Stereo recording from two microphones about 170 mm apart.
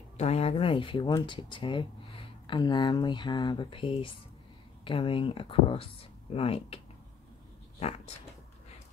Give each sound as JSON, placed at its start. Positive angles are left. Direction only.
{"t": 0.2, "sound": "speech", "side_deg": 35}